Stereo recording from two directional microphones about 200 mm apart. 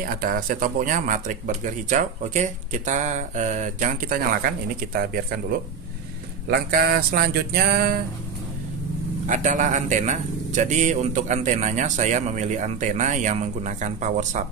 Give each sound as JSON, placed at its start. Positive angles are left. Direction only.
{"t": 0.0, "sound": "speech", "side_deg": -45}
{"t": 6.5, "sound": "a sound", "side_deg": -50}
{"t": 9.3, "sound": "speech", "side_deg": -40}